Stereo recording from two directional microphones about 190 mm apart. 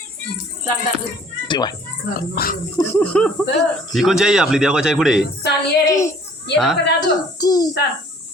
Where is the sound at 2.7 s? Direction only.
10° left (ahead or behind).